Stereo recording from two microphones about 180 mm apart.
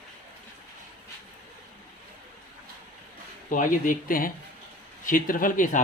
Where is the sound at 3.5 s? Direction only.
50° left (ahead or behind).